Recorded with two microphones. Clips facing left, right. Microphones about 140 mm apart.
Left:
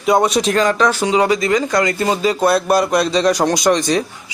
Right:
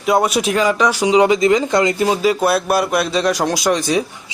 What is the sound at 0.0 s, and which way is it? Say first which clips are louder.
Speech: left 1 dB; 5° right (ahead or behind).